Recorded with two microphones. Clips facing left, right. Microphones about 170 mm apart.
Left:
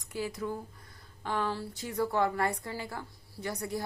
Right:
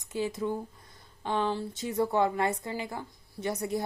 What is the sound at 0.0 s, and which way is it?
A woman's voice, 20° right (ahead or behind).